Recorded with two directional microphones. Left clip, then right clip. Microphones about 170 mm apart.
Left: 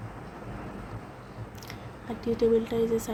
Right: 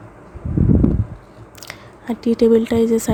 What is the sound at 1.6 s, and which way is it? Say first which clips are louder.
Speech: right 12 dB; 60° right (ahead or behind).